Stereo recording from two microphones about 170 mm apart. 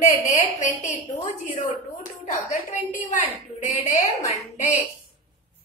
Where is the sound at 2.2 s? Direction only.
45° left (ahead or behind).